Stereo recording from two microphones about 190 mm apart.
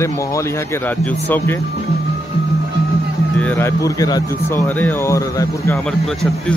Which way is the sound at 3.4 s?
10° left (ahead or behind).